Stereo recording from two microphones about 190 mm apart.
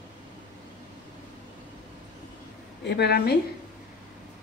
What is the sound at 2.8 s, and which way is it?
Speech, 60° left (ahead or behind).